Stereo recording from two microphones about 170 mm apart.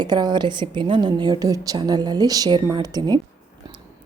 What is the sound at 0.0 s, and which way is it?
A woman's voice, 25° right (ahead or behind).